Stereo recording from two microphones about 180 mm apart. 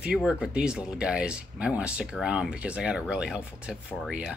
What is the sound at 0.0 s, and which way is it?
Speech, 5° right (ahead or behind).